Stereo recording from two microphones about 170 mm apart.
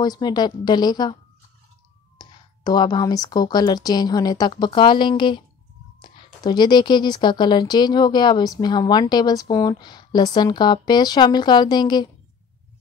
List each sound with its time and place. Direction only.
0.0 s a woman's voice: 25° left (ahead or behind)
2.1 s a woman's voice: 25° left (ahead or behind)